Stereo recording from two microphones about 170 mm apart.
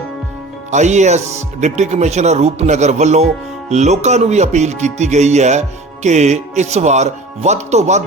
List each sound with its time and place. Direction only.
0.7 s speech: 45° right (ahead or behind)